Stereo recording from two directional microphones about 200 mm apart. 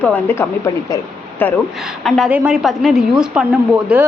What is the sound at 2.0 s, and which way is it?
A man's voice, 5° right (ahead or behind).